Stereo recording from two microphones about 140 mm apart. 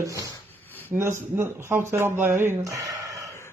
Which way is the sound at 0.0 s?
25° right (ahead or behind).